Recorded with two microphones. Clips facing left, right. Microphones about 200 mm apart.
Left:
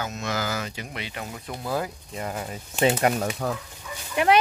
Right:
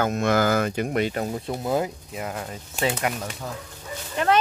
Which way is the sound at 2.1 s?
5° right (ahead or behind).